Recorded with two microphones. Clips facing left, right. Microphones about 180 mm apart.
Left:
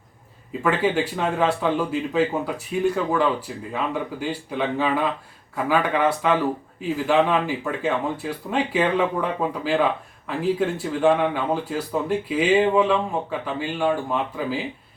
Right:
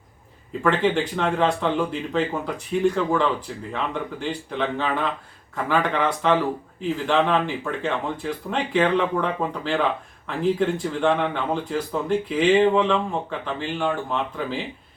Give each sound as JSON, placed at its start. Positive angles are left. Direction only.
{"t": 0.6, "sound": "speech", "side_deg": 10}